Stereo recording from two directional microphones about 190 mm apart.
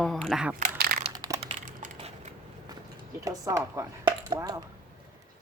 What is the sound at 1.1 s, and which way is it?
Typing, 20° right (ahead or behind).